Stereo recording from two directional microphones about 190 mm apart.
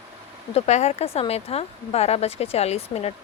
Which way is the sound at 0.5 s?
35° left (ahead or behind).